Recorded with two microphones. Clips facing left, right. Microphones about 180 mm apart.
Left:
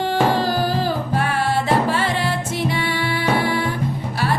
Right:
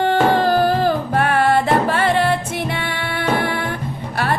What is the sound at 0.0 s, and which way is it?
Music, 55° right (ahead or behind).